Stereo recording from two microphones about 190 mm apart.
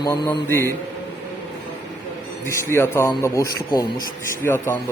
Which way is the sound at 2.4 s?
15° left (ahead or behind).